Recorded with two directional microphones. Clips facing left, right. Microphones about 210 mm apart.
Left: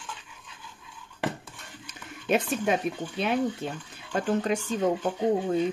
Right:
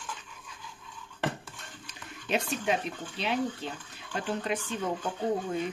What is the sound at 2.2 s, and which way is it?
Speech, 50° left (ahead or behind).